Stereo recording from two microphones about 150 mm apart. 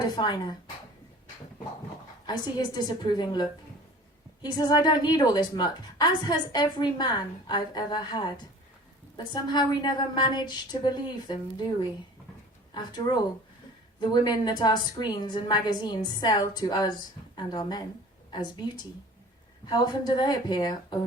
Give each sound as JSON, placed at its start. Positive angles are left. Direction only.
{"t": 0.0, "sound": "speech", "side_deg": 30}
{"t": 2.2, "sound": "a woman's voice", "side_deg": 30}
{"t": 12.7, "sound": "a woman's voice", "side_deg": 30}